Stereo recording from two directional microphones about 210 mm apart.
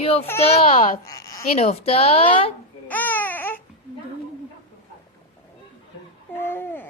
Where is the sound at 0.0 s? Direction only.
30° left (ahead or behind).